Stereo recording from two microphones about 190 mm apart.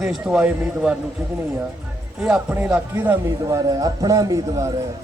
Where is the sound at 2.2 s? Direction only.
10° right (ahead or behind).